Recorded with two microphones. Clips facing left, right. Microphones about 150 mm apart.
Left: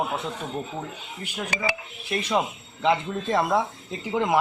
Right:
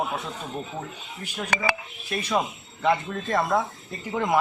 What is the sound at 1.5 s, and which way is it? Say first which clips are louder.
Speech: right 3 dB; 60° right (ahead or behind).